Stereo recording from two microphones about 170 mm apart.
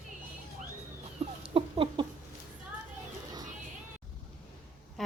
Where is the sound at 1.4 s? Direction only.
30° right (ahead or behind).